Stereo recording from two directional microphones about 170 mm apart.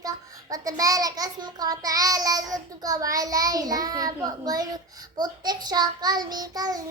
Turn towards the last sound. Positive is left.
turn(degrees=-20)  # may be behind; listen again after turning